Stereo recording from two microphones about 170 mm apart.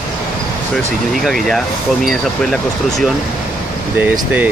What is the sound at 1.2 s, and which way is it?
Speech, centre (ahead or behind).